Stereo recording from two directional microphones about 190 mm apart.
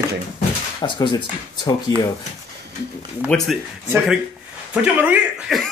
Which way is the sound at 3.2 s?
5° left (ahead or behind).